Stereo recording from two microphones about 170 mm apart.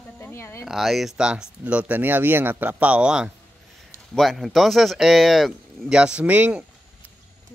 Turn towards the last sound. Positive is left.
turn(degrees=-5)  # may be behind; listen again after turning